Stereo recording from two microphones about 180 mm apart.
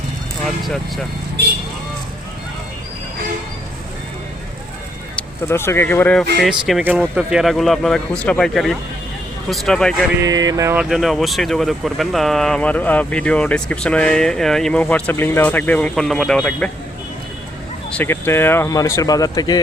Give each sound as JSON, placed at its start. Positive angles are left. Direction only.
{"t": 0.4, "sound": "speech", "side_deg": 0}
{"t": 5.1, "sound": "speech", "side_deg": 15}
{"t": 6.4, "sound": "speech", "side_deg": 0}
{"t": 10.2, "sound": "a sound", "side_deg": -20}
{"t": 10.8, "sound": "speech", "side_deg": 0}
{"t": 17.9, "sound": "speech", "side_deg": 10}